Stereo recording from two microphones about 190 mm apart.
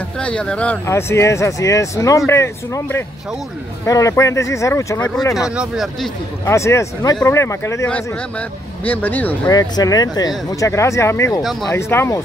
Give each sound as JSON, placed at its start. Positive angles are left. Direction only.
{"t": 0.2, "sound": "speech", "side_deg": 5}
{"t": 5.6, "sound": "speech", "side_deg": 0}
{"t": 6.4, "sound": "speech", "side_deg": 15}
{"t": 9.5, "sound": "speech", "side_deg": 20}